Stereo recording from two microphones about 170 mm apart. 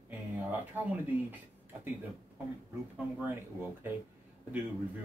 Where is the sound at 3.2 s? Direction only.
10° right (ahead or behind).